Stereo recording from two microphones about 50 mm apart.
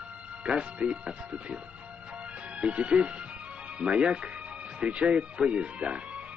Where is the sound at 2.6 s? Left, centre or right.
Right.